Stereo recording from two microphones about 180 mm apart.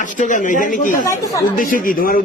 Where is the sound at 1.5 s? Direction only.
50° left (ahead or behind).